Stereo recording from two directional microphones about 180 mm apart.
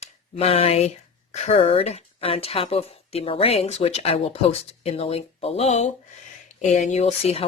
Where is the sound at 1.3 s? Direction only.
35° left (ahead or behind).